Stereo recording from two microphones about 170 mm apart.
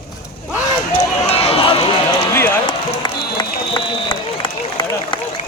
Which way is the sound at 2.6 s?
25° left (ahead or behind).